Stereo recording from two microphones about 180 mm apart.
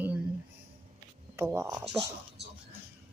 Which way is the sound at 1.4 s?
15° right (ahead or behind).